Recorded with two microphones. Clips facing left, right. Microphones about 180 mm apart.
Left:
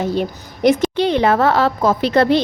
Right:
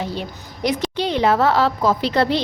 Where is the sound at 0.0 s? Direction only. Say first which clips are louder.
Left 7 dB; 50° left (ahead or behind).